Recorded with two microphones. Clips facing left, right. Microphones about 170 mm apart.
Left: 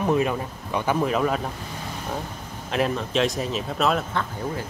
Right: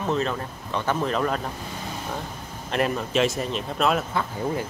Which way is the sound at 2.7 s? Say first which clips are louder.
Even; centre (ahead or behind).